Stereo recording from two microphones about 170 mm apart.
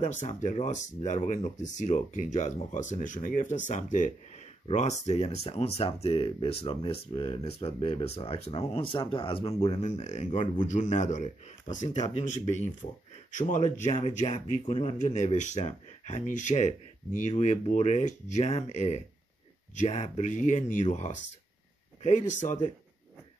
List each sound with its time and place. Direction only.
0.2 s speech: 45° left (ahead or behind)
13.3 s speech: 50° left (ahead or behind)